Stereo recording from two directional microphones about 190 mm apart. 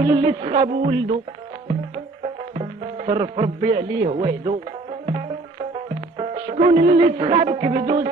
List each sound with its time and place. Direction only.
0.0 s a man's voice: 25° right (ahead or behind)
2.2 s speech: 35° right (ahead or behind)
6.1 s music: 35° right (ahead or behind)